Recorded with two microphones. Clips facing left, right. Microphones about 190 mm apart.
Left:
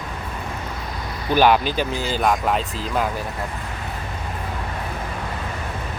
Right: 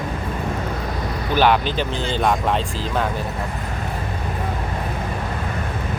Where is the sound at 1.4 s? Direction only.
10° left (ahead or behind).